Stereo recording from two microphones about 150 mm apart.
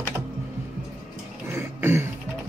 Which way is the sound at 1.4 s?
15° right (ahead or behind).